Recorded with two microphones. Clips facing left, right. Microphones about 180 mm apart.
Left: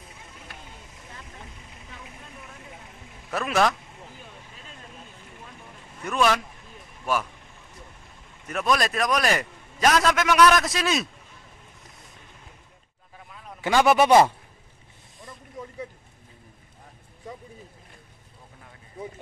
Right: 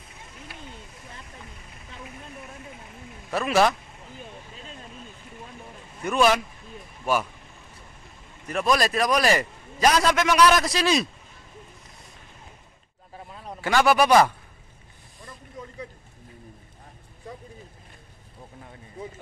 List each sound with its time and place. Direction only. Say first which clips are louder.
3.3 s a man's voice: right 2 dB; centre (ahead or behind)
6.0 s speech: right 2 dB; 5° right (ahead or behind)
8.5 s a man's voice: right 1 dB; centre (ahead or behind)
13.1 s a sound: right 5 dB; 35° right (ahead or behind)
13.6 s speech: left 1 dB; 20° left (ahead or behind)